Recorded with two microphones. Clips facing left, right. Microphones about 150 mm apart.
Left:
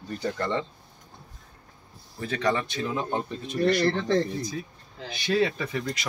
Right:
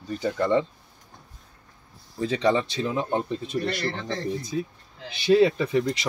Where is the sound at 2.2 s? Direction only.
20° right (ahead or behind).